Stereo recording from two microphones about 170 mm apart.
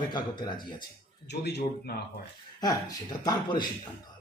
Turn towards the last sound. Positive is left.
turn(degrees=25)  # may be behind; listen again after turning